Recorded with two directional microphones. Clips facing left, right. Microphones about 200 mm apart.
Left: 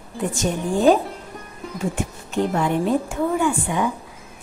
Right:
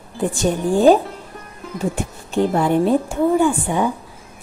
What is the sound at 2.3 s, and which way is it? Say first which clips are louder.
A woman's voice: right 4 dB; 35° right (ahead or behind).